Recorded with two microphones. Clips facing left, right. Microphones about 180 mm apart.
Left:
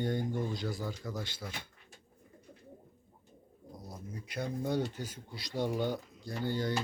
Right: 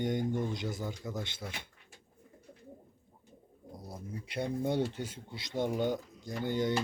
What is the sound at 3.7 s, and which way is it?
Pigeon, 30° right (ahead or behind).